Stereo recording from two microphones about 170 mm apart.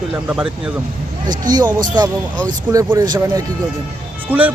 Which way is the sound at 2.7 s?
15° right (ahead or behind).